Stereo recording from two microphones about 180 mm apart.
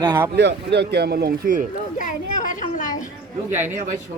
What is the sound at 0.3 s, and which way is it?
Speech, 70° right (ahead or behind).